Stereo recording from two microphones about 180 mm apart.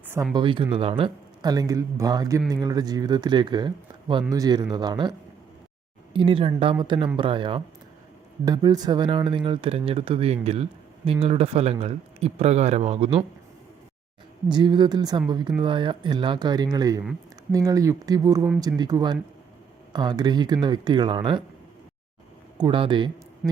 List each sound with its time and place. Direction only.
0.3 s speech: 25° right (ahead or behind)
6.1 s speech: 30° right (ahead or behind)
14.4 s speech: 25° right (ahead or behind)
22.5 s speech: 25° right (ahead or behind)
23.4 s speech: 5° right (ahead or behind)